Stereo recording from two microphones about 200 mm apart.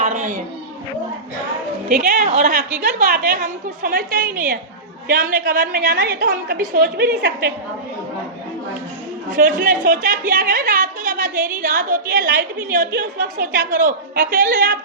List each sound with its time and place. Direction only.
0.0 s a sound: 40° right (ahead or behind)
1.9 s a woman's voice: 40° right (ahead or behind)
9.3 s a woman's voice: 40° right (ahead or behind)